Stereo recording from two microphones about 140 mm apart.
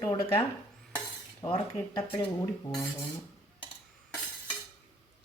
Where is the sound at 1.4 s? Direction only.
35° left (ahead or behind).